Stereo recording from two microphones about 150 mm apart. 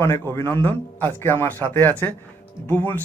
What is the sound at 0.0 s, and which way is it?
Speech, 15° left (ahead or behind).